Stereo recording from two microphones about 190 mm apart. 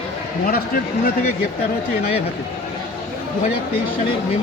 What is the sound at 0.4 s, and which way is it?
Speech, 50° left (ahead or behind).